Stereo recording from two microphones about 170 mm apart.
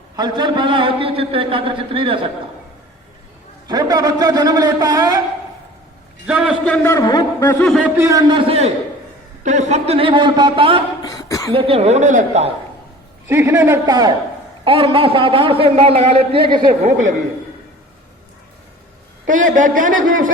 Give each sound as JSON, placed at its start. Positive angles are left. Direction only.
{"t": 0.2, "sound": "a man's voice", "side_deg": -25}
{"t": 3.7, "sound": "a man's voice", "side_deg": -25}
{"t": 6.2, "sound": "a man's voice", "side_deg": -5}
{"t": 6.7, "sound": "a man's voice", "side_deg": 5}
{"t": 6.9, "sound": "speech", "side_deg": 25}
{"t": 7.8, "sound": "a man's voice", "side_deg": -10}
{"t": 8.3, "sound": "a man's voice", "side_deg": -35}
{"t": 11.0, "sound": "a sound", "side_deg": 20}
{"t": 11.5, "sound": "a man's voice", "side_deg": -35}
{"t": 13.2, "sound": "a man's voice", "side_deg": -15}
{"t": 16.8, "sound": "speech", "side_deg": -45}
{"t": 19.5, "sound": "speech", "side_deg": -50}